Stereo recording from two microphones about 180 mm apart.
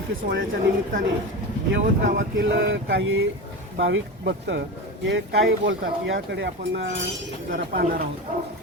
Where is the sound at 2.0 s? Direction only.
65° right (ahead or behind); by 3.2 s 90° right.